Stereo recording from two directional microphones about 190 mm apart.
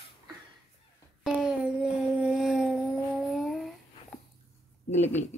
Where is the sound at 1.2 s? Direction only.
5° right (ahead or behind).